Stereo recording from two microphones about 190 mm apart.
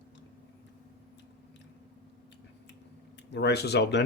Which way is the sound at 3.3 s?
60° left (ahead or behind).